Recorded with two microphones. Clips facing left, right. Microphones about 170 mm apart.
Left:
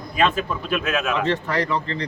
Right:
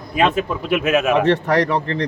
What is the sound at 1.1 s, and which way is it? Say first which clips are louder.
Speech: right 7 dB; 65° right (ahead or behind).